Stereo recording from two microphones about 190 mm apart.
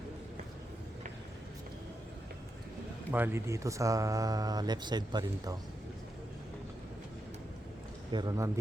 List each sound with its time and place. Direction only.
3.1 s speech: 10° right (ahead or behind)
8.1 s a man's voice: 20° right (ahead or behind)